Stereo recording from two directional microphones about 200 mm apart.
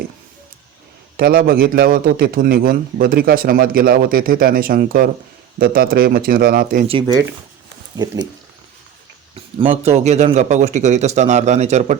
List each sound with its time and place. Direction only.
1.1 s a man's voice: 45° right (ahead or behind)
6.8 s speech: 25° right (ahead or behind)
9.3 s a man's voice: 30° right (ahead or behind)